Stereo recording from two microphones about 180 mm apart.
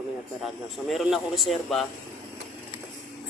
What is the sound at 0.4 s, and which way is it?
Speech, centre (ahead or behind).